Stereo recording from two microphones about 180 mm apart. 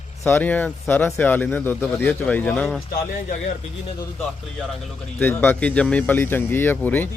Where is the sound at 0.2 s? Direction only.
10° left (ahead or behind).